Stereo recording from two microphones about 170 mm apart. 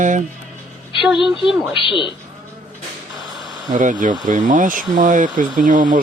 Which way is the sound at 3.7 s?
50° right (ahead or behind).